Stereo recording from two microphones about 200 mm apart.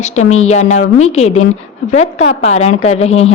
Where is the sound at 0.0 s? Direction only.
35° left (ahead or behind).